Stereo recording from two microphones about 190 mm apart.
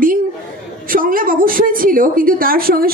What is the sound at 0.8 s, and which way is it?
A woman's voice, 45° right (ahead or behind).